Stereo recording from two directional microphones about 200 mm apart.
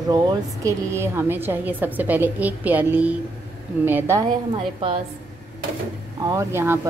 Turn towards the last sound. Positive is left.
turn(degrees=-10)  # may be behind; listen again after turning